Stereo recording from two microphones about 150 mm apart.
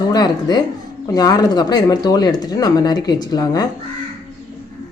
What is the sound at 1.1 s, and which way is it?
Speech, 25° left (ahead or behind).